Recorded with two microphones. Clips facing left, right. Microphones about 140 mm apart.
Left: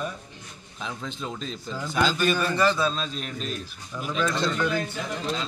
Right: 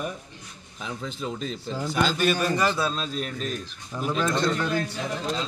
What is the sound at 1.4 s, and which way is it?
Speech, 45° right (ahead or behind).